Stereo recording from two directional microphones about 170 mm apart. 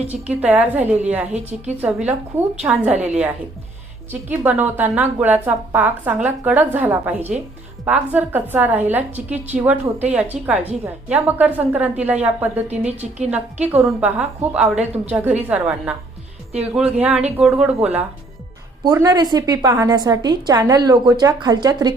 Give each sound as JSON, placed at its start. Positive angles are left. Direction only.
{"t": 0.1, "sound": "a woman's voice", "side_deg": -10}
{"t": 12.9, "sound": "a woman's voice", "side_deg": -40}
{"t": 13.3, "sound": "a woman's voice", "side_deg": -10}
{"t": 14.8, "sound": "a woman's voice", "side_deg": -40}
{"t": 15.1, "sound": "a woman's voice", "side_deg": -10}
{"t": 18.9, "sound": "a woman's voice", "side_deg": -20}